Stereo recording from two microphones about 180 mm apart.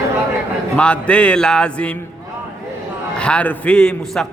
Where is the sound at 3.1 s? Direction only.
5° left (ahead or behind).